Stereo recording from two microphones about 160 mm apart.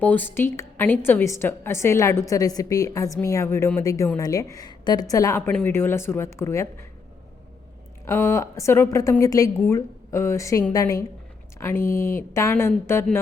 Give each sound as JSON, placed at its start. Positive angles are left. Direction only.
{"t": 0.0, "sound": "a woman's voice", "side_deg": 10}
{"t": 8.0, "sound": "a woman's voice", "side_deg": 15}